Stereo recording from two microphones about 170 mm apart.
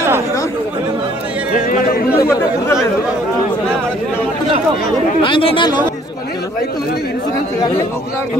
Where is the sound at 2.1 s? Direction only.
15° left (ahead or behind).